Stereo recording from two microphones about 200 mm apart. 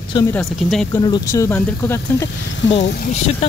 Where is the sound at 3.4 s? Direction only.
30° left (ahead or behind).